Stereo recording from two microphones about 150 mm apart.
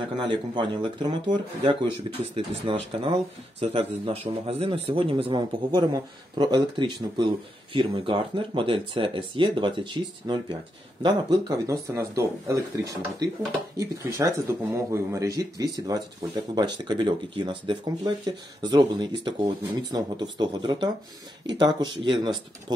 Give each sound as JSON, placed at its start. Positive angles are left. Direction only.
{"t": 0.2, "sound": "a man's voice", "side_deg": -30}